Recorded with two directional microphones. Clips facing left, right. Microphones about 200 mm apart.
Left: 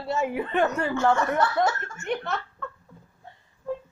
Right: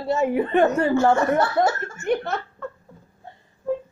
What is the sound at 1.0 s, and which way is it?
Speech, 35° right (ahead or behind).